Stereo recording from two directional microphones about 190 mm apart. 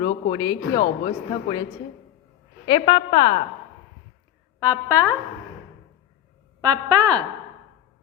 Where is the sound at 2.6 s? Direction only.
25° left (ahead or behind).